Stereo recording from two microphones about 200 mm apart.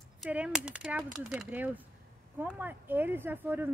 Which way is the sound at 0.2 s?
5° right (ahead or behind).